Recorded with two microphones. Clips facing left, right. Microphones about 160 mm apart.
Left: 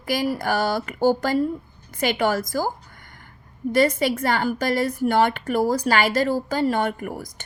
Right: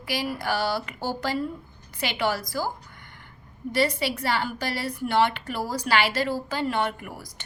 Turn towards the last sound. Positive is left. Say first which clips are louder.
# left 4 dB
turn(degrees=45)  # may be behind; listen again after turning